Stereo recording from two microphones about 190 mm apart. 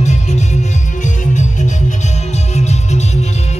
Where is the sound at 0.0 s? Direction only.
35° left (ahead or behind).